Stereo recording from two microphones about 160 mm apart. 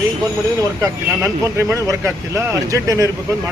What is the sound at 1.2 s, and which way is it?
Speech, 15° right (ahead or behind).